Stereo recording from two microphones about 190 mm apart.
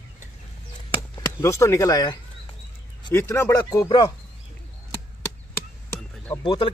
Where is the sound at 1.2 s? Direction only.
15° left (ahead or behind).